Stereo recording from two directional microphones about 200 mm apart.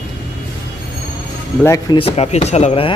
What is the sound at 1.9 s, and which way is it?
Speech, 30° left (ahead or behind).